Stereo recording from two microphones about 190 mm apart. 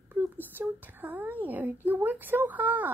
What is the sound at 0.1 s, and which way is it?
Speech, 10° right (ahead or behind).